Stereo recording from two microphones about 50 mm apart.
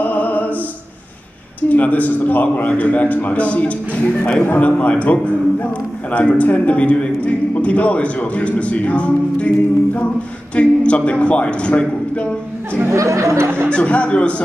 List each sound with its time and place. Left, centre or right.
0.0 s music: left
1.7 s a man's voice: left
10.5 s a man's voice: left
12.9 s a sound: right
13.7 s a man's voice: left